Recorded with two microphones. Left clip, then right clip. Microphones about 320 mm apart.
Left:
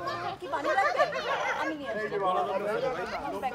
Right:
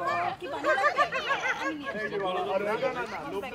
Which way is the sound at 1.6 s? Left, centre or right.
Left.